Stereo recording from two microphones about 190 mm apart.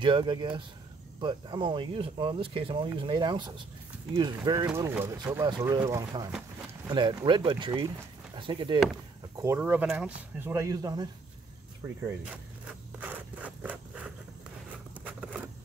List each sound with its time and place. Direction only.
0.0 s speech: 25° right (ahead or behind)
9.4 s speech: 10° right (ahead or behind)
13.0 s a sound: 5° right (ahead or behind)